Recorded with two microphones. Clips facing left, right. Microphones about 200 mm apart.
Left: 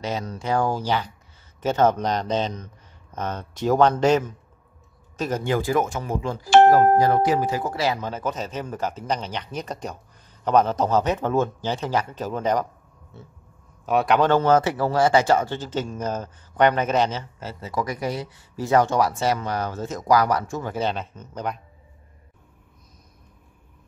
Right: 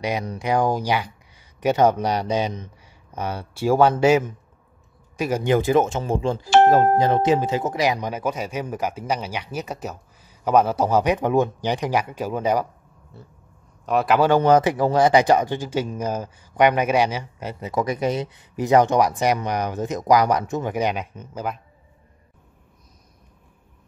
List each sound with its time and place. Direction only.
0.0 s speech: 15° right (ahead or behind)
5.1 s speech: 10° right (ahead or behind)
13.1 s pig: centre (ahead or behind)
13.8 s speech: centre (ahead or behind)